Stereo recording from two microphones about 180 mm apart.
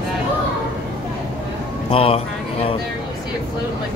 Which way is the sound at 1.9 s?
30° left (ahead or behind).